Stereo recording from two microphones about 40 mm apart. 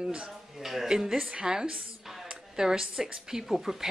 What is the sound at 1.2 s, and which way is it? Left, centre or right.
Speech, right.